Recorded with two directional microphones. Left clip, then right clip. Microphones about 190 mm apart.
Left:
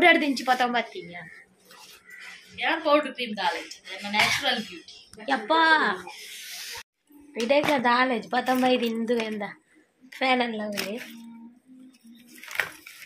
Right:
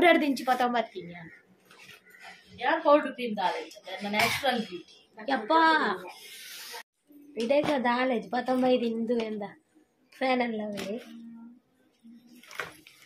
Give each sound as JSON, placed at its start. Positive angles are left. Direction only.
{"t": 0.0, "sound": "a woman's voice", "side_deg": -5}
{"t": 2.5, "sound": "a woman's voice", "side_deg": -40}
{"t": 5.2, "sound": "a woman's voice", "side_deg": 10}
{"t": 7.3, "sound": "a woman's voice", "side_deg": 10}